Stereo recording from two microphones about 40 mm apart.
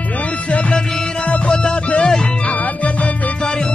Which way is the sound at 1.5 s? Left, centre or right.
Left.